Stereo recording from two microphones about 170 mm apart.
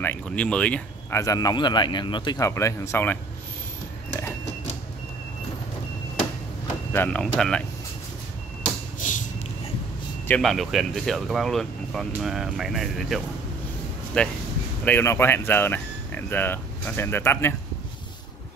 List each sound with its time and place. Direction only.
0.0 s speech: 10° left (ahead or behind)
1.2 s speech: 20° left (ahead or behind)
6.9 s speech: 10° left (ahead or behind)
10.2 s speech: 5° left (ahead or behind)